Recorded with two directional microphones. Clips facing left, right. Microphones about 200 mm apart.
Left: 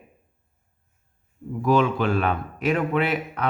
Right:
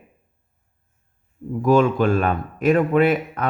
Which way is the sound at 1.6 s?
45° right (ahead or behind).